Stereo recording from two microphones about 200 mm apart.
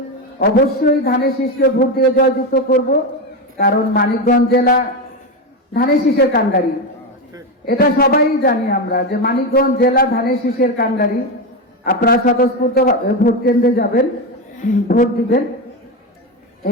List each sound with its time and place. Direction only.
0.3 s speech: 50° left (ahead or behind)
7.6 s speech: 50° left (ahead or behind)